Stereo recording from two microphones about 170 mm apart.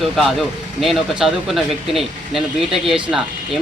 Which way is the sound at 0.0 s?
Centre (ahead or behind).